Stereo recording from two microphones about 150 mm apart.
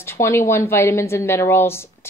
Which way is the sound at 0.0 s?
15° left (ahead or behind).